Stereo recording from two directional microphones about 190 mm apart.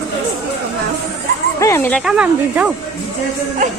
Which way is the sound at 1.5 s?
15° left (ahead or behind).